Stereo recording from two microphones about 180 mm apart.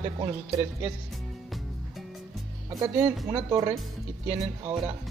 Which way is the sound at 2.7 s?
20° right (ahead or behind).